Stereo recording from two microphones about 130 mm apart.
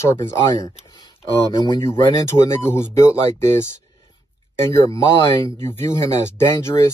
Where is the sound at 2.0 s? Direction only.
25° left (ahead or behind).